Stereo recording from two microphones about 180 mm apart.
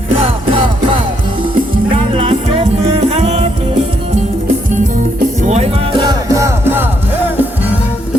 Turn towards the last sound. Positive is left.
turn(degrees=-10)  # may be behind; listen again after turning